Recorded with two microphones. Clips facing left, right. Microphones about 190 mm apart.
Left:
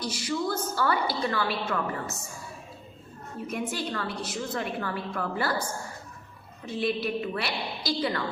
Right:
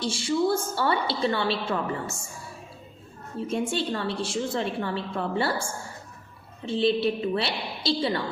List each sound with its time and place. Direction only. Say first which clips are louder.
0.0 s a woman's voice: right 5 dB; 25° right (ahead or behind)
3.3 s a woman's voice: right 5 dB; 25° right (ahead or behind)